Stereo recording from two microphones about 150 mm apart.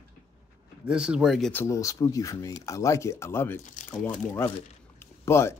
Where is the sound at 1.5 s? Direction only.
20° left (ahead or behind).